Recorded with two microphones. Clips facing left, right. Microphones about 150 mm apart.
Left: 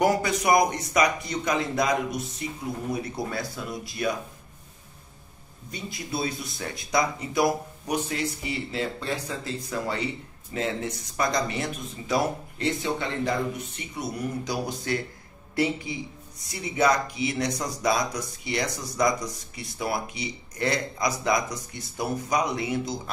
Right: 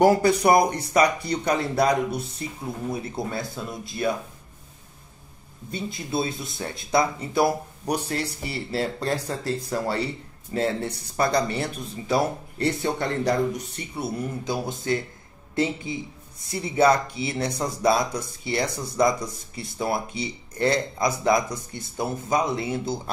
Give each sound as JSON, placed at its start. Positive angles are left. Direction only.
{"t": 0.0, "sound": "speech", "side_deg": -30}
{"t": 5.7, "sound": "speech", "side_deg": -25}